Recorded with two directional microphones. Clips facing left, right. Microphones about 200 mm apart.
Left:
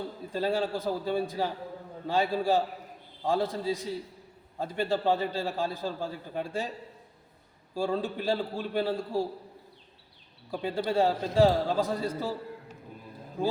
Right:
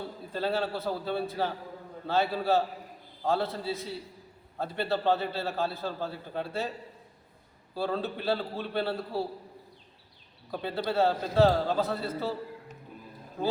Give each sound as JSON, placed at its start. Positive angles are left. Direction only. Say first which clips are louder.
{"t": 0.3, "sound": "a man's voice", "louder": "left 1 dB", "side_deg": 10}
{"t": 7.7, "sound": "a man's voice", "louder": "left 2 dB", "side_deg": 15}
{"t": 10.6, "sound": "a man's voice", "louder": "left 1 dB", "side_deg": 10}